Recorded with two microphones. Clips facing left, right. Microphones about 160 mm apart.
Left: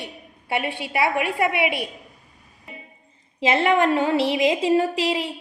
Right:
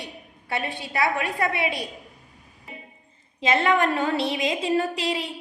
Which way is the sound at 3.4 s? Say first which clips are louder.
Left 2 dB; 25° left (ahead or behind).